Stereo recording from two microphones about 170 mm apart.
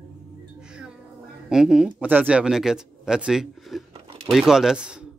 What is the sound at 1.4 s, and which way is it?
A man's voice, 5° right (ahead or behind).